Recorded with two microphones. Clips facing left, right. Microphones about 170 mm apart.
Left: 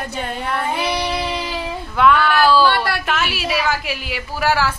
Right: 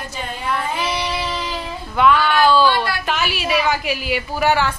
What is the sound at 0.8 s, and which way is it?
Child singing, 60° left (ahead or behind).